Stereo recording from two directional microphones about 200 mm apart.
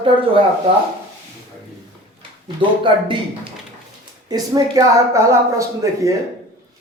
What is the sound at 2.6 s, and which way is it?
Speech, 25° right (ahead or behind).